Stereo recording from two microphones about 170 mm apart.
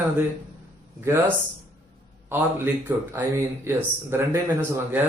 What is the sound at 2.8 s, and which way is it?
Speech, 10° right (ahead or behind).